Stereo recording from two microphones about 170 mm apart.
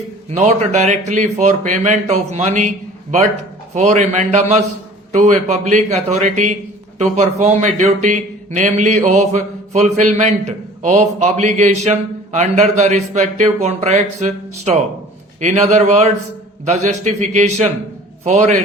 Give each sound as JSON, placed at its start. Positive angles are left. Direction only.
{"t": 0.3, "sound": "a man's voice", "side_deg": -40}